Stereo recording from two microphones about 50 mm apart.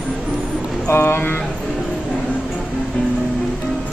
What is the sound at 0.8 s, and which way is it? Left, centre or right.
Speech, left.